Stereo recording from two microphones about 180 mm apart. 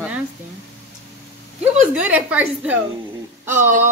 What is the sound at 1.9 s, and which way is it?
A woman's voice, 10° right (ahead or behind).